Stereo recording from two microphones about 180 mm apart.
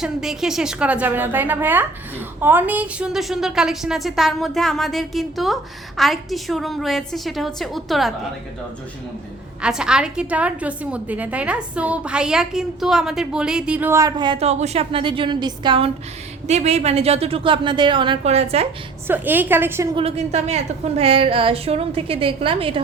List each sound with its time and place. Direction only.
0.0 s a woman's voice: centre (ahead or behind)
9.6 s a woman's voice: 5° right (ahead or behind); by 18.7 s 35° right (ahead or behind)
19.0 s a woman's voice: 10° right (ahead or behind)
20.0 s a woman's voice: 35° right (ahead or behind)